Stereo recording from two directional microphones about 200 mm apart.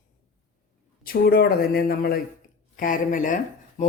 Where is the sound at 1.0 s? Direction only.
50° left (ahead or behind).